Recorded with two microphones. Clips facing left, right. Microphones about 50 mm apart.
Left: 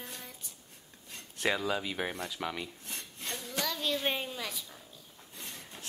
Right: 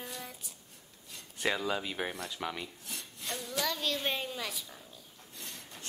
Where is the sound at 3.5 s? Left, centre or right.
Centre.